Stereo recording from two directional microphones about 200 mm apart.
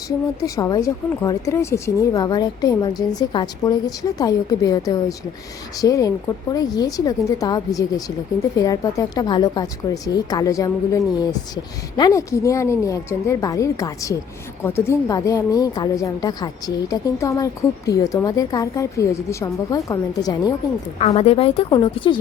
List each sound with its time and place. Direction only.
0.4 s a woman's voice: 15° left (ahead or behind)
21.0 s speech: 30° left (ahead or behind)